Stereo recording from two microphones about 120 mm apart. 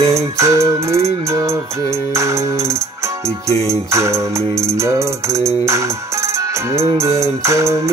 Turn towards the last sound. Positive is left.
turn(degrees=-25)  # may be behind; listen again after turning